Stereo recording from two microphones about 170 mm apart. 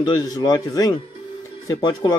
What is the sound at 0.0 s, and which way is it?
Speech, 25° left (ahead or behind).